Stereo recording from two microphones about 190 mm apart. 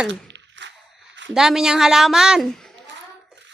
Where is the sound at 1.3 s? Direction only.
5° right (ahead or behind).